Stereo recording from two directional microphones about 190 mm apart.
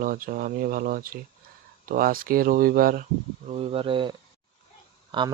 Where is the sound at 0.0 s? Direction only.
50° right (ahead or behind).